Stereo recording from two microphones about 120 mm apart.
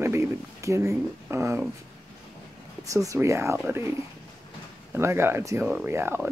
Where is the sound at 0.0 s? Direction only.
25° right (ahead or behind).